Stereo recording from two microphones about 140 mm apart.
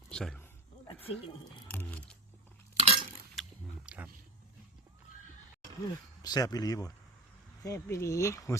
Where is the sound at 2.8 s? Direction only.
50° right (ahead or behind).